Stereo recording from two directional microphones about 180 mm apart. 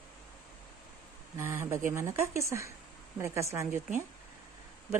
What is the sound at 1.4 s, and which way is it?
Speech, 15° right (ahead or behind).